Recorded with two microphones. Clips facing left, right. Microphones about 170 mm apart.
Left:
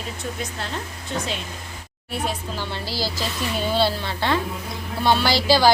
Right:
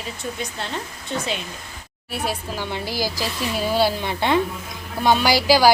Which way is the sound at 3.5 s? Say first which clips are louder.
Right 1 dB; 5° right (ahead or behind).